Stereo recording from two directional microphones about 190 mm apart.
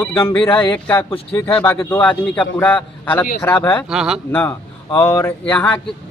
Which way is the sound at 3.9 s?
5° right (ahead or behind).